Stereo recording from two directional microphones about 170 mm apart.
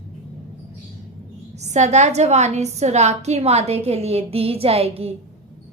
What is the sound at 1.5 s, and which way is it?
A woman's voice, 40° right (ahead or behind).